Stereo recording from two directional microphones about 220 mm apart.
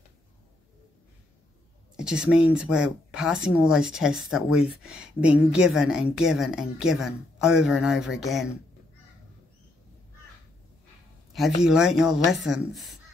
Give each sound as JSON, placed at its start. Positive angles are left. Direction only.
{"t": 2.0, "sound": "speech", "side_deg": -5}
{"t": 11.6, "sound": "speech", "side_deg": -5}